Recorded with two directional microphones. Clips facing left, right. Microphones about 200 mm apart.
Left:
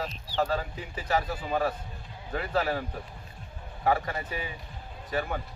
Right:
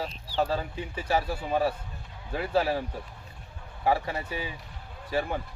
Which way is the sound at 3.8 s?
25° right (ahead or behind).